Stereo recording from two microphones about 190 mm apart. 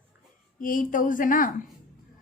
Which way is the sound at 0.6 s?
45° left (ahead or behind).